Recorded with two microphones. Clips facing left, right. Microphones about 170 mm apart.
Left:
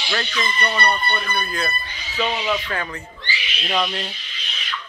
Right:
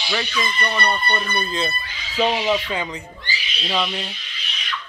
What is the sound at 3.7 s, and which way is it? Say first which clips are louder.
Speech: left 1 dB; 5° right (ahead or behind).